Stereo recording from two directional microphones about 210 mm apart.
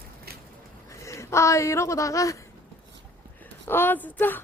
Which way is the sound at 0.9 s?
15° left (ahead or behind).